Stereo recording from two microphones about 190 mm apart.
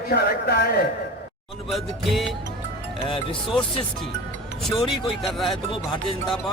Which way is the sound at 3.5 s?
Centre (ahead or behind).